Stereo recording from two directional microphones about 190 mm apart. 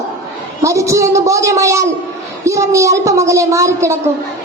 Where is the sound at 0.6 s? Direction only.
15° right (ahead or behind).